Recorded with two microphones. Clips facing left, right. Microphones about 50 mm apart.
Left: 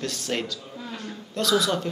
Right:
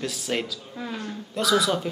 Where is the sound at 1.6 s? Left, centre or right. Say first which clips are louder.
Right 1 dB; centre.